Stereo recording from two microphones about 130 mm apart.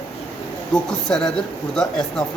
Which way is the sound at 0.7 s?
5° left (ahead or behind).